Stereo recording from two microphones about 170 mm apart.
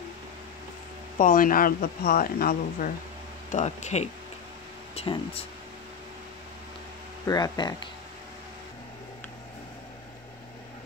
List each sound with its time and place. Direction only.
1.1 s speech: 55° left (ahead or behind)
3.5 s speech: 45° left (ahead or behind)
7.2 s speech: 25° left (ahead or behind)